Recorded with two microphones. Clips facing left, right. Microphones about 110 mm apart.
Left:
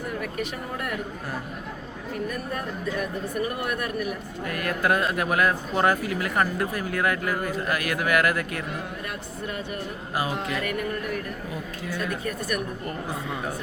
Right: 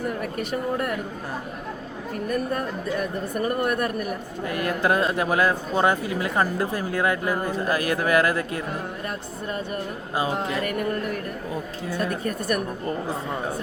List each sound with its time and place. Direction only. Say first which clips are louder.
0.2 s music: right 3 dB; 40° right (ahead or behind)
2.1 s music: right 5 dB; 40° right (ahead or behind)
3.4 s speech: right 7 dB; 45° right (ahead or behind)
4.4 s speech: right 2 dB; 25° right (ahead or behind)
10.3 s music: right 3 dB; 35° right (ahead or behind)
12.8 s speech: right 4 dB; 30° right (ahead or behind)